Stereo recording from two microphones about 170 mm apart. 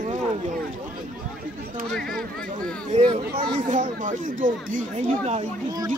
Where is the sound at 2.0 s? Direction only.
5° left (ahead or behind).